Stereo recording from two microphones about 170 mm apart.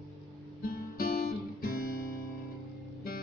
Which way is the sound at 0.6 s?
60° left (ahead or behind).